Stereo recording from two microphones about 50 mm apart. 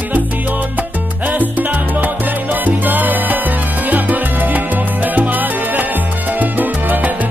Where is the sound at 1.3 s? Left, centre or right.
Right.